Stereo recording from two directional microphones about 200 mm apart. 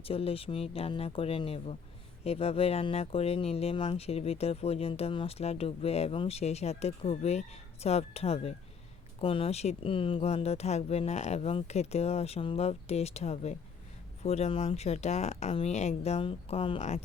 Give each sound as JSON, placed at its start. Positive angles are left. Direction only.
{"t": 0.0, "sound": "speech", "side_deg": 30}